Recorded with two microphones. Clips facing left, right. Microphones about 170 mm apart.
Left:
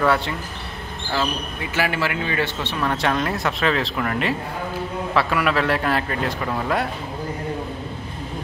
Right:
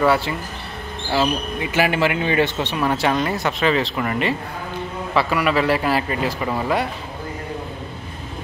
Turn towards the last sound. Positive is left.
turn(degrees=0)  # may be behind; listen again after turning